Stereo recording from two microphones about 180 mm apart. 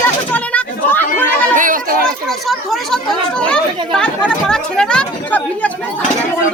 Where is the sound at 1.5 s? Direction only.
50° right (ahead or behind).